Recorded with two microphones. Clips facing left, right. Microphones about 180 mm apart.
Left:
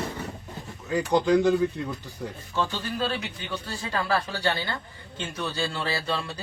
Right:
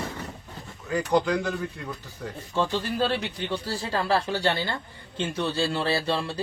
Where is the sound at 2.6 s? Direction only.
25° right (ahead or behind).